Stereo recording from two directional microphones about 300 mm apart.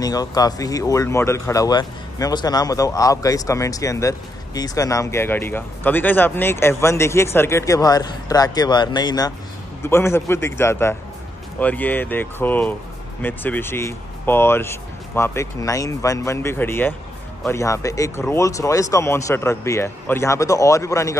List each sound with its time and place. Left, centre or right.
0.0 s speech: centre